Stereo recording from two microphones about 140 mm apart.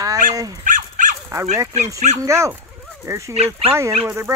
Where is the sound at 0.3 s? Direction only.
25° right (ahead or behind).